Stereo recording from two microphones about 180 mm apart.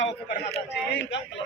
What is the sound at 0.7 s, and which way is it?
Speech, 75° left (ahead or behind).